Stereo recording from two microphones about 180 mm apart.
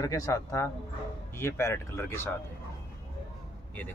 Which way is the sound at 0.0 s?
20° left (ahead or behind).